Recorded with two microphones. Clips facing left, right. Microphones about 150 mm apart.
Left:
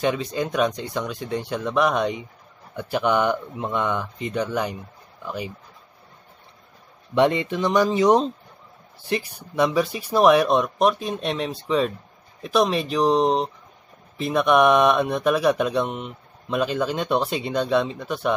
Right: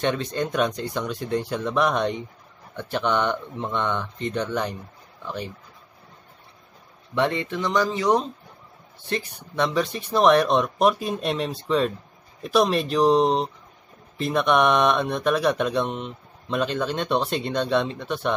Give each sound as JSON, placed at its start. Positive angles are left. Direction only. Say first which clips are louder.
{"t": 0.0, "sound": "speech", "louder": "left 1 dB", "side_deg": 5}
{"t": 7.2, "sound": "speech", "louder": "left 4 dB", "side_deg": 15}
{"t": 9.1, "sound": "speech", "louder": "left 2 dB", "side_deg": 10}